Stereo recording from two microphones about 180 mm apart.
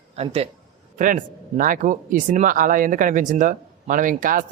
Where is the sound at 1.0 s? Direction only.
50° right (ahead or behind).